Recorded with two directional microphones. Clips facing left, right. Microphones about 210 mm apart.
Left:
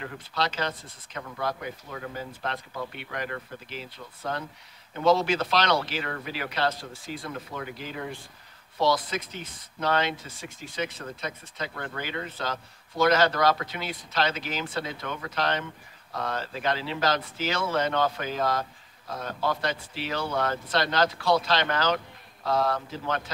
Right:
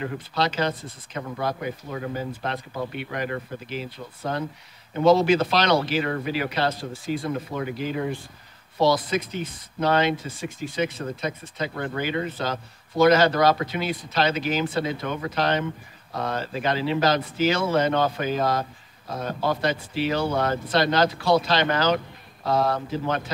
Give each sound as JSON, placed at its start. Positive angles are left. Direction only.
{"t": 0.0, "sound": "speech", "side_deg": -15}
{"t": 9.8, "sound": "speech", "side_deg": -10}